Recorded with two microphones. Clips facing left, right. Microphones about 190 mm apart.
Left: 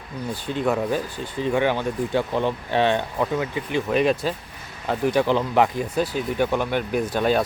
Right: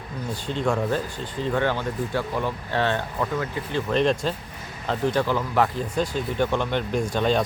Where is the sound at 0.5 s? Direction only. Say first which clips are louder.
Left 1 dB; 5° left (ahead or behind).